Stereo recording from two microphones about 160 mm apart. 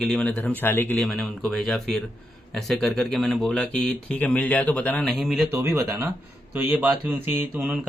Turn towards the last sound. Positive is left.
turn(degrees=-10)  # may be behind; listen again after turning